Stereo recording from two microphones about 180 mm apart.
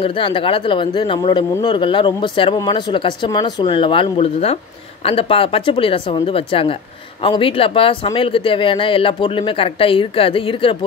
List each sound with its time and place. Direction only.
0.0 s speech: 30° left (ahead or behind)